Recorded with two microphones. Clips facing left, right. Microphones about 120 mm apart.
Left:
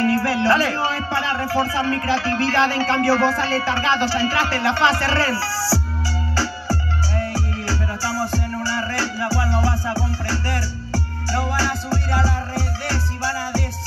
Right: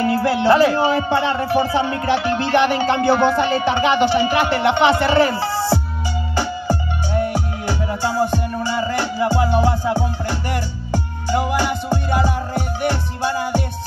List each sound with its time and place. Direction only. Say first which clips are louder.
0.0 s speech: right 2 dB; 25° right (ahead or behind)
6.3 s music: right 4 dB; 20° right (ahead or behind)